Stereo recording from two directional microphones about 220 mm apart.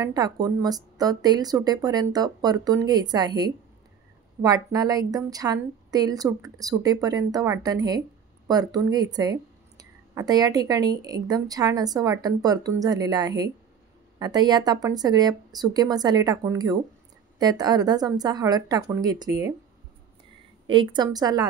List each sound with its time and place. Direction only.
0.0 s speech: 15° right (ahead or behind)
20.6 s speech: 20° right (ahead or behind)